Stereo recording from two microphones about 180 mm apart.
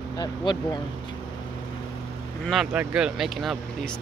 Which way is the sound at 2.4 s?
Centre (ahead or behind).